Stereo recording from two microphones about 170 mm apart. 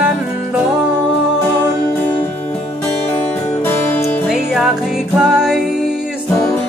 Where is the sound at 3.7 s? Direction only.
15° left (ahead or behind).